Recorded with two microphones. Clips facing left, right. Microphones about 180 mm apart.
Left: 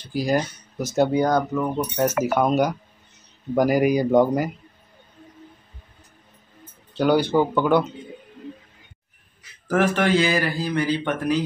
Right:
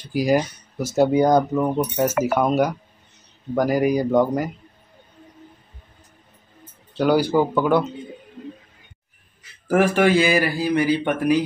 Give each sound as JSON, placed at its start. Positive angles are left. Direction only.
{"t": 0.1, "sound": "speech", "side_deg": -10}
{"t": 1.1, "sound": "speech", "side_deg": -15}
{"t": 2.0, "sound": "speech", "side_deg": -5}
{"t": 3.5, "sound": "speech", "side_deg": 10}
{"t": 7.0, "sound": "speech", "side_deg": -5}
{"t": 9.7, "sound": "speech", "side_deg": -10}